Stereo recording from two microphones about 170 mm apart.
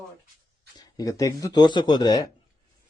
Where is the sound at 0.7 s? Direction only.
20° left (ahead or behind).